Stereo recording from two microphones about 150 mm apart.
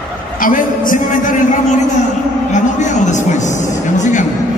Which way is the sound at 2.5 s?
55° left (ahead or behind).